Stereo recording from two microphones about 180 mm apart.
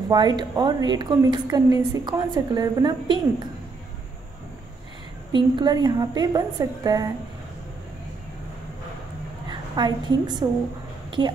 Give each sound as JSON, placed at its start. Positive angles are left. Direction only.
{"t": 0.1, "sound": "a woman's voice", "side_deg": -25}
{"t": 5.3, "sound": "a woman's voice", "side_deg": -25}
{"t": 9.5, "sound": "a woman's voice", "side_deg": -25}
{"t": 11.1, "sound": "a sound", "side_deg": -25}